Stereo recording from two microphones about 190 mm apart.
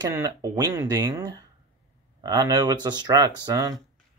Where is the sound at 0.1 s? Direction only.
15° right (ahead or behind).